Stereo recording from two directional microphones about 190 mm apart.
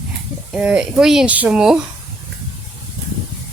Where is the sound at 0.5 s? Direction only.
5° right (ahead or behind).